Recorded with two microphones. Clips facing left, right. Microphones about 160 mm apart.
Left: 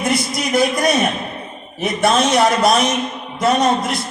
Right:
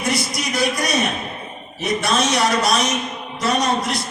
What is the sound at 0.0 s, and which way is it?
A man's voice, 55° left (ahead or behind).